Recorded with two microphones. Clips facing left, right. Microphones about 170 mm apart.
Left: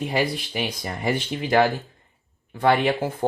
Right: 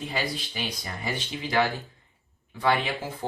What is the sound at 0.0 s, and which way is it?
Speech, 55° left (ahead or behind).